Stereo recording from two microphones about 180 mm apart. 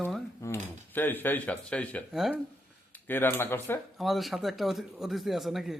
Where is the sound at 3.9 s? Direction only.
Centre (ahead or behind).